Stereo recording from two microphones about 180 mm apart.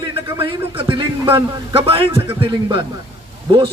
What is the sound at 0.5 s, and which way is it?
A man's voice, 30° right (ahead or behind).